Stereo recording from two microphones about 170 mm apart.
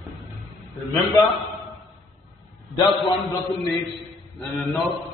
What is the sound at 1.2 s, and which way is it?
Speech, 15° left (ahead or behind).